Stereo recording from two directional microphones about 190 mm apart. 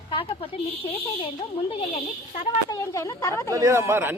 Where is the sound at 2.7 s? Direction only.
20° left (ahead or behind).